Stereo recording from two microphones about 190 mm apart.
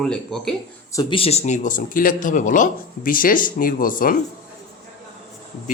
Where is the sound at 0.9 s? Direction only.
30° left (ahead or behind); by 4.2 s 45° left (ahead or behind).